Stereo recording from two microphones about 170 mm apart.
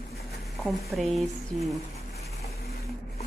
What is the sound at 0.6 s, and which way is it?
Speech, centre (ahead or behind).